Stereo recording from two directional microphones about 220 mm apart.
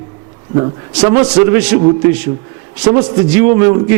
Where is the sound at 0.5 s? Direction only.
25° right (ahead or behind).